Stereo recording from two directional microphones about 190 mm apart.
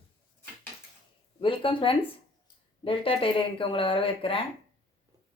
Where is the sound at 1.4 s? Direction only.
25° left (ahead or behind).